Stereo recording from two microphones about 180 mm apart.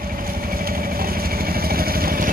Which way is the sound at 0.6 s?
55° right (ahead or behind).